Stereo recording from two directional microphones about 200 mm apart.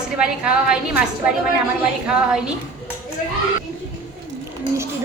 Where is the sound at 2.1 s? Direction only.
5° right (ahead or behind).